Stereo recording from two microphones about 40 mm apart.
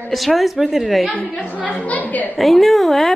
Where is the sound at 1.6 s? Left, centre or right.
Left.